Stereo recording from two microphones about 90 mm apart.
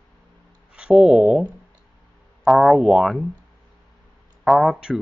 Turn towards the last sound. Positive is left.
turn(degrees=-5)  # may be behind; listen again after turning